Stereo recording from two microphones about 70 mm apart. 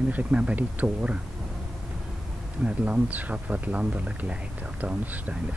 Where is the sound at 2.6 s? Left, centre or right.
Centre.